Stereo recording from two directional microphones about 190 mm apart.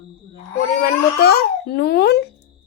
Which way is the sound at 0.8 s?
55° left (ahead or behind).